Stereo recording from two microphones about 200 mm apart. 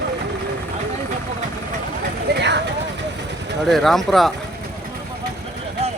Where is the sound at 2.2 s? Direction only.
55° right (ahead or behind).